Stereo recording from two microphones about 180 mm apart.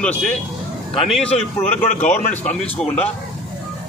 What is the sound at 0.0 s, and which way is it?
Speech, 5° left (ahead or behind).